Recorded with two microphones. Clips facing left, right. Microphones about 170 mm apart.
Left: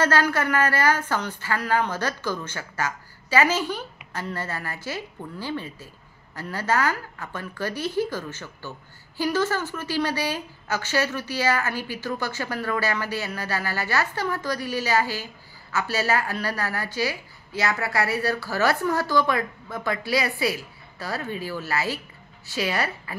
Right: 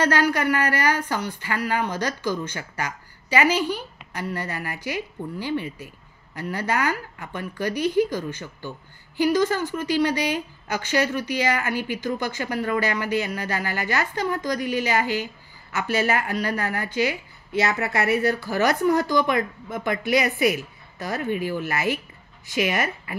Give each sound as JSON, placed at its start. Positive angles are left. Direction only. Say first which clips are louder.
{"t": 0.0, "sound": "a woman's voice", "louder": "right 1 dB", "side_deg": -15}